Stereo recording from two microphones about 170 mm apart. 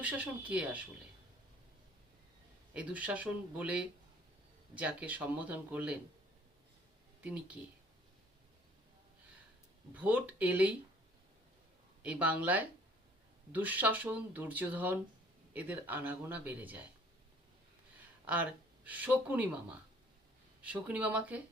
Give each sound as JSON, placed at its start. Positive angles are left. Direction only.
{"t": 0.0, "sound": "speech", "side_deg": -10}
{"t": 2.7, "sound": "speech", "side_deg": -10}
{"t": 7.2, "sound": "speech", "side_deg": -5}
{"t": 9.9, "sound": "speech", "side_deg": -10}
{"t": 12.0, "sound": "speech", "side_deg": -10}
{"t": 18.9, "sound": "speech", "side_deg": -10}
{"t": 20.6, "sound": "speech", "side_deg": -10}